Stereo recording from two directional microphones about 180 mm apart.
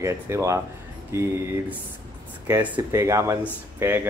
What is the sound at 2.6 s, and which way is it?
Speech, 10° right (ahead or behind).